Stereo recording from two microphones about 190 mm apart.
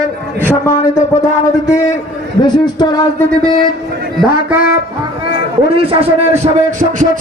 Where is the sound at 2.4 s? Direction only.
20° left (ahead or behind).